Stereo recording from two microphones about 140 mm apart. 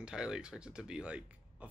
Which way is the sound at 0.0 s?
5° right (ahead or behind).